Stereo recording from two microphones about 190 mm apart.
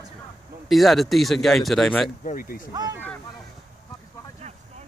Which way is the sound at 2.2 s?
50° left (ahead or behind).